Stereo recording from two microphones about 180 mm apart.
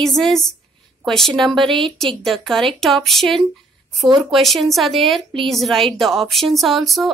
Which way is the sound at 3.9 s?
25° right (ahead or behind).